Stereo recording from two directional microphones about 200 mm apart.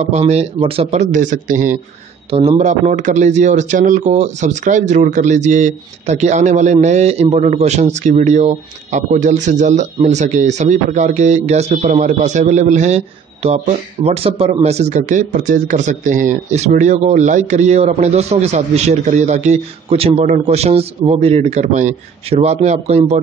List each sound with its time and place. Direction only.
0.1 s speech: 30° right (ahead or behind)